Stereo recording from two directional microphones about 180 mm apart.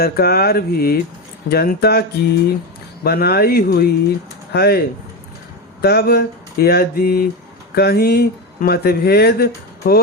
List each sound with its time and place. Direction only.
0.0 s speech: 60° left (ahead or behind)
5.8 s speech: 65° left (ahead or behind)